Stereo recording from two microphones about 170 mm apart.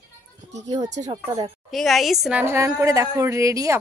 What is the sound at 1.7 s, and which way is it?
Speech, centre (ahead or behind).